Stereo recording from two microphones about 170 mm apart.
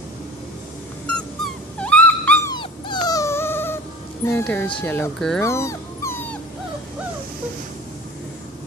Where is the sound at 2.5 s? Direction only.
25° left (ahead or behind).